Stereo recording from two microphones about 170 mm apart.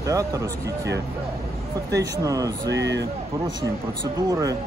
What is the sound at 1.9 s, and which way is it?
Speech, 90° right.